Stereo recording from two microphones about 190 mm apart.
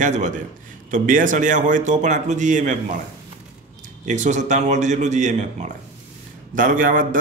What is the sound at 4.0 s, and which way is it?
A man's voice, 40° right (ahead or behind).